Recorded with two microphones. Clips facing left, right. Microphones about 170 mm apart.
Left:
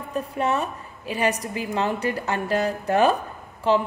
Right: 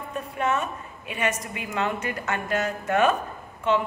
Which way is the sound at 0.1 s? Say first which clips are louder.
Left 2 dB; 35° left (ahead or behind).